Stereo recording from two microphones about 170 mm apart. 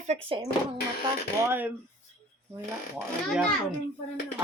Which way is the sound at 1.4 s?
10° right (ahead or behind).